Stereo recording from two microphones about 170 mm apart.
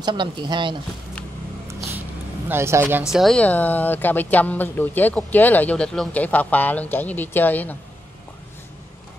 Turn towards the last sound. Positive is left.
turn(degrees=10)  # may be behind; listen again after turning